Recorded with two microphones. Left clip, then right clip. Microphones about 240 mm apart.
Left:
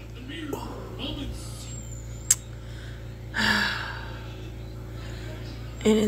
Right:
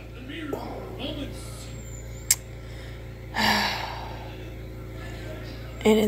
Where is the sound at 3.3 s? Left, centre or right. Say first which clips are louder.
Right 1 dB; centre.